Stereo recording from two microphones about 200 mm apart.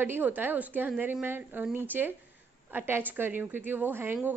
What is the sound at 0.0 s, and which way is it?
A woman's voice, 10° right (ahead or behind).